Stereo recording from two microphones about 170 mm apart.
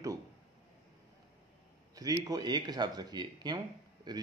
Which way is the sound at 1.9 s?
20° right (ahead or behind).